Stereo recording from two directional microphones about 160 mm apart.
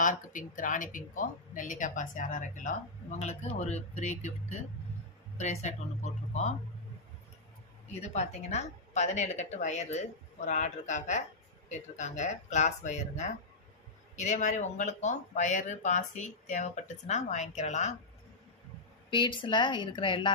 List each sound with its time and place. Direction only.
0.0 s speech: 55° left (ahead or behind)
8.0 s speech: 45° left (ahead or behind)
19.1 s speech: 30° left (ahead or behind)